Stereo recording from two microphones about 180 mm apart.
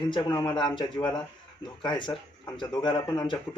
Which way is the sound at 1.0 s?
20° left (ahead or behind).